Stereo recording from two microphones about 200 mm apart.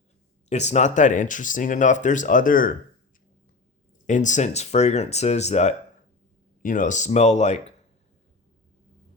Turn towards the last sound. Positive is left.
turn(degrees=35)  # may be behind; listen again after turning